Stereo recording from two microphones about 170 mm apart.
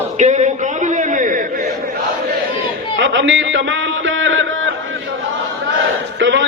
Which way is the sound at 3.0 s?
90° right.